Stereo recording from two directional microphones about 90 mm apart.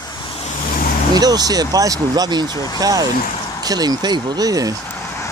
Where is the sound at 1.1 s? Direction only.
45° right (ahead or behind).